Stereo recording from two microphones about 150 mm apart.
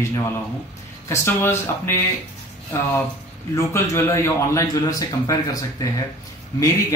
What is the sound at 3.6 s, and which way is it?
Speech, 20° left (ahead or behind).